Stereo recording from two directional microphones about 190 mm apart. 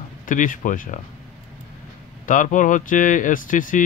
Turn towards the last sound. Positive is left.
turn(degrees=45)  # may be behind; listen again after turning